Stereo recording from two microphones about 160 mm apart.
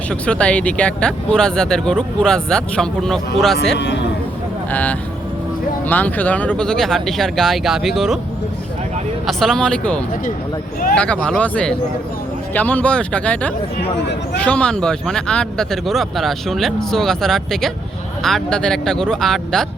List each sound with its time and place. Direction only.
0.1 s speech: 5° left (ahead or behind)
3.8 s a man's voice: 90° left
4.7 s speech: 10° left (ahead or behind)
9.2 s speech: centre (ahead or behind)